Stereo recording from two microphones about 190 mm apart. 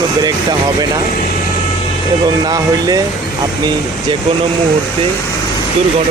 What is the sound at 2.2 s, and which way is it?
Speech, 20° right (ahead or behind).